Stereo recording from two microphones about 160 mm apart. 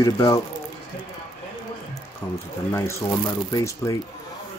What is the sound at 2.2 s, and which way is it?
Speech, 15° left (ahead or behind).